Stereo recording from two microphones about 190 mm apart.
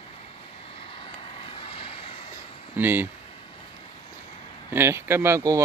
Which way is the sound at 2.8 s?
10° right (ahead or behind).